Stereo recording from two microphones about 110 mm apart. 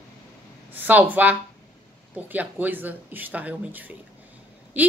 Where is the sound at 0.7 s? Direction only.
15° right (ahead or behind).